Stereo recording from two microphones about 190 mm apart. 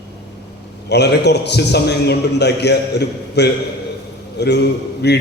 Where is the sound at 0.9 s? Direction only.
60° left (ahead or behind).